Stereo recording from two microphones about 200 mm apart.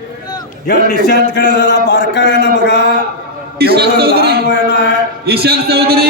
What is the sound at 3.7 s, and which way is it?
A man's voice, 50° right (ahead or behind).